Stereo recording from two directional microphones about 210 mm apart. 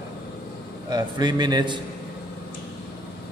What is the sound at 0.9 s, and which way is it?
Speech, 20° right (ahead or behind).